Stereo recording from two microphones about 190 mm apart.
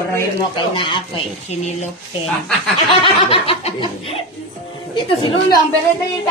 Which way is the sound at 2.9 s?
30° left (ahead or behind).